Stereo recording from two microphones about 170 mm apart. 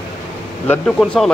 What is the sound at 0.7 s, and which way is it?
Speech, 5° left (ahead or behind).